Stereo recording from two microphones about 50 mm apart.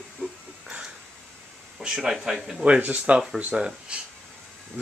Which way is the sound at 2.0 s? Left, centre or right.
Centre.